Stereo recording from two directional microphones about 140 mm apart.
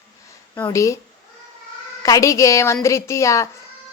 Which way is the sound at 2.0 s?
25° left (ahead or behind).